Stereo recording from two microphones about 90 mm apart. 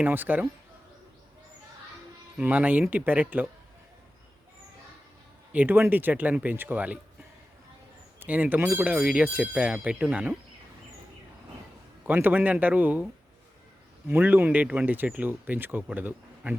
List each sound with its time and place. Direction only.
0.0 s speech: 20° right (ahead or behind)
2.4 s speech: 15° right (ahead or behind)
5.5 s speech: 20° right (ahead or behind)
8.2 s speech: 20° right (ahead or behind)
12.0 s speech: 20° right (ahead or behind)
14.1 s speech: 20° right (ahead or behind)